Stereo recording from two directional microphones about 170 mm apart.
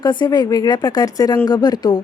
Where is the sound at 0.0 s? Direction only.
25° left (ahead or behind).